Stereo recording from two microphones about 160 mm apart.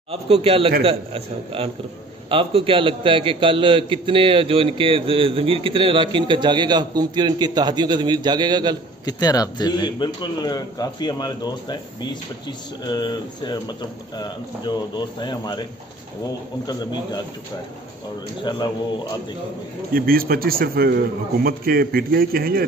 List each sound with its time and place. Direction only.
0.1 s a man's voice: 35° right (ahead or behind)
9.0 s a man's voice: 25° left (ahead or behind)
18.4 s a man's voice: 30° left (ahead or behind)
19.9 s a man's voice: 65° right (ahead or behind)